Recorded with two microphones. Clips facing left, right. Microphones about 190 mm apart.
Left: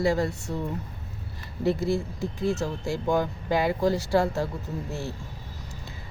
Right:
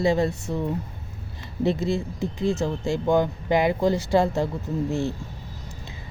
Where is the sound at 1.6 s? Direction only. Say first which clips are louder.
Right 1 dB; 20° right (ahead or behind).